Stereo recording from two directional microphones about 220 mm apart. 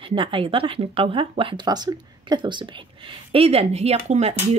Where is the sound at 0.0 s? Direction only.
25° right (ahead or behind).